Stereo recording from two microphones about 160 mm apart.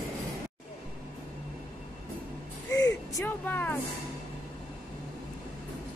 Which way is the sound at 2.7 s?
20° left (ahead or behind).